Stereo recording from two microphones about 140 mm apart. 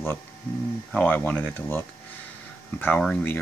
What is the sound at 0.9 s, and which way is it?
Speech, 10° left (ahead or behind).